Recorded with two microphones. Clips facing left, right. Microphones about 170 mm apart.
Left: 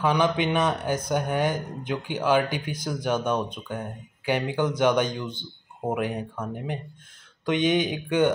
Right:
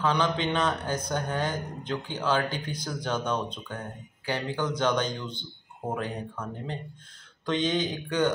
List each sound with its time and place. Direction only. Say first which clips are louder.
0.0 s speech: left 3 dB; 15° left (ahead or behind)